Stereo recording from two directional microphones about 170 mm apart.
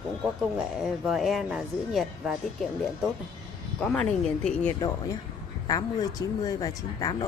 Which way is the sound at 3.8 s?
5° left (ahead or behind).